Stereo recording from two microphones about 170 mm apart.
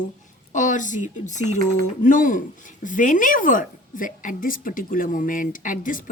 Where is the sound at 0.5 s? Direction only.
50° left (ahead or behind).